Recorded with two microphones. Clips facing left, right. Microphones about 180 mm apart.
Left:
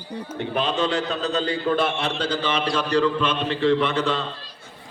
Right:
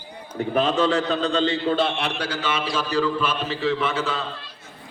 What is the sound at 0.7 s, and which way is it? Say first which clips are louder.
Speech: right 2 dB; centre (ahead or behind).